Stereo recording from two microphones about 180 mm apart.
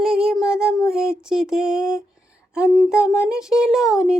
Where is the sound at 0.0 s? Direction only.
5° right (ahead or behind).